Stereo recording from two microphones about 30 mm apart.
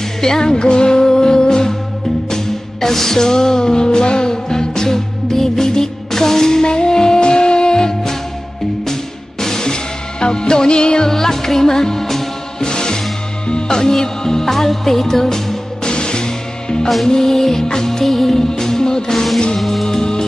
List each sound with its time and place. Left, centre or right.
0.2 s music: left
9.4 s music: centre
10.2 s music: left
11.1 s music: centre
12.5 s music: left
13.5 s speech: left
15.8 s music: left
19.6 s music: centre
19.9 s music: left